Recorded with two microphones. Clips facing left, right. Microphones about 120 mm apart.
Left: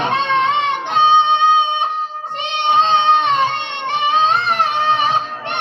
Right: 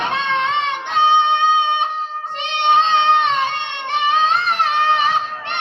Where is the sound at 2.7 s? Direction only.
15° left (ahead or behind).